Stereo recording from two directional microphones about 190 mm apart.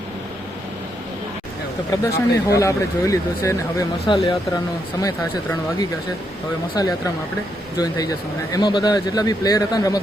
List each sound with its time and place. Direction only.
1.9 s speech: 15° left (ahead or behind)